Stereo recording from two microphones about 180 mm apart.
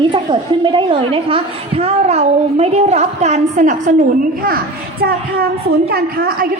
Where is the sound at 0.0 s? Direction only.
25° right (ahead or behind); by 3.9 s 45° right (ahead or behind).